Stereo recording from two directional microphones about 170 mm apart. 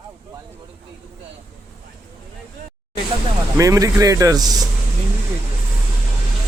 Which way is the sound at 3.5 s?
20° right (ahead or behind).